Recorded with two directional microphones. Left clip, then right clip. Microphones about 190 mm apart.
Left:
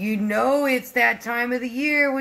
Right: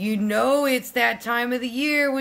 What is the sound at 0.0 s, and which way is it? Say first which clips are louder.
A woman's voice: even; 5° right (ahead or behind).